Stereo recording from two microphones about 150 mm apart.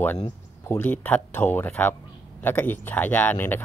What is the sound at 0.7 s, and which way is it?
Speech, 15° left (ahead or behind).